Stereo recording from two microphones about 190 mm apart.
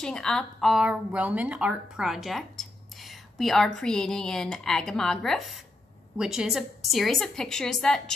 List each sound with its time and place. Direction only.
0.0 s speech: 5° left (ahead or behind)